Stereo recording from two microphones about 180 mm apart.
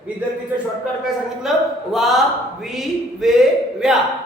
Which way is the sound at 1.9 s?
Centre (ahead or behind).